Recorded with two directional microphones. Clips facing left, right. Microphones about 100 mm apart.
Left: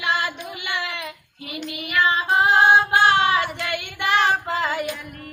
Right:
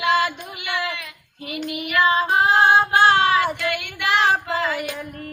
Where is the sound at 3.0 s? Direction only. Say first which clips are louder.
Right 2 dB; 35° right (ahead or behind).